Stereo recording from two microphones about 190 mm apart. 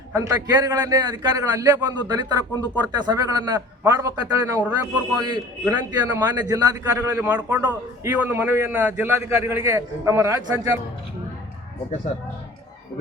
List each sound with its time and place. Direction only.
0.1 s a man's voice: 15° right (ahead or behind)